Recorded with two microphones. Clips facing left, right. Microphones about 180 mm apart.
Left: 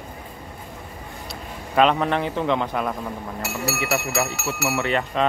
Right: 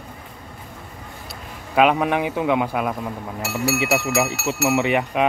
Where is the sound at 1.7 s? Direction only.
10° right (ahead or behind).